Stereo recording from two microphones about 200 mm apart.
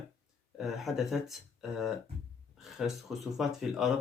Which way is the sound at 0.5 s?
Centre (ahead or behind).